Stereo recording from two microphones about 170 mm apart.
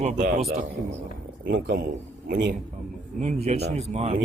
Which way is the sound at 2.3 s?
90° right.